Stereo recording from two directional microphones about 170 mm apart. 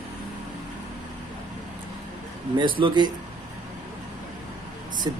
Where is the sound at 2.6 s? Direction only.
30° right (ahead or behind).